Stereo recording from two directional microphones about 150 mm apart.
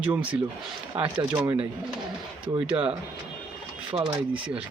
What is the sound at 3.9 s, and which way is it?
Speech, 25° right (ahead or behind).